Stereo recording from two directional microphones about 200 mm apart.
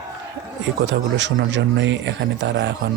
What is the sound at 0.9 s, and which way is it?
Speech, 65° right (ahead or behind).